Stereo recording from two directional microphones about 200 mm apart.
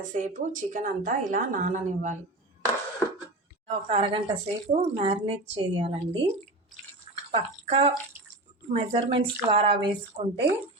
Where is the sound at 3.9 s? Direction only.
30° right (ahead or behind).